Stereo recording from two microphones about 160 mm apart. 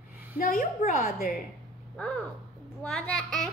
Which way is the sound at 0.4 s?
60° left (ahead or behind).